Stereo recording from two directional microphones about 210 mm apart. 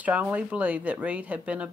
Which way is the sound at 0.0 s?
5° right (ahead or behind).